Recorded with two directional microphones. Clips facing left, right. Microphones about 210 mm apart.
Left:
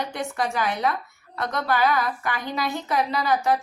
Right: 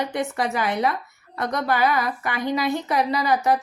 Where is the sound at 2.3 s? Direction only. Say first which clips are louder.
Right 4 dB; 20° right (ahead or behind).